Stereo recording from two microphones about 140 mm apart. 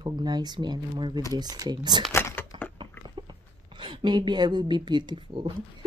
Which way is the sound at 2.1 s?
15° left (ahead or behind).